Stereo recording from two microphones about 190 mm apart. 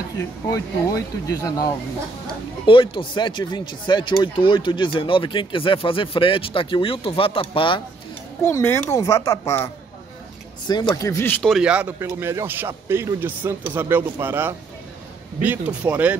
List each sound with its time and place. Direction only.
0.2 s speech: 20° left (ahead or behind)
8.5 s speech: 15° left (ahead or behind)
10.7 s speech: 20° left (ahead or behind); by 16.2 s 5° right (ahead or behind)